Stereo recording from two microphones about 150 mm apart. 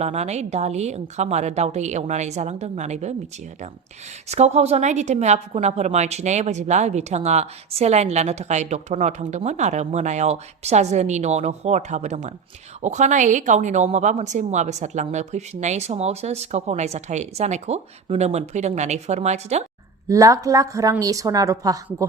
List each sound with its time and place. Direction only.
0.0 s a woman's voice: 45° right (ahead or behind)
4.3 s a woman's voice: 45° right (ahead or behind)
20.1 s speech: 20° right (ahead or behind)